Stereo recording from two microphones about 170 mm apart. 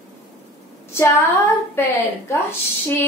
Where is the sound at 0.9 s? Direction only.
15° left (ahead or behind).